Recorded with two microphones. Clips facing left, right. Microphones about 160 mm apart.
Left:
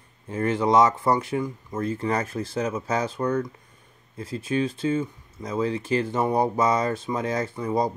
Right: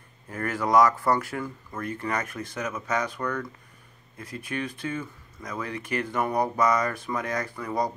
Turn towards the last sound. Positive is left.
turn(degrees=25)  # may be behind; listen again after turning